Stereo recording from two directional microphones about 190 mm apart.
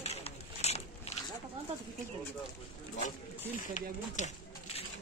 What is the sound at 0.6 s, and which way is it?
Biting, 35° left (ahead or behind).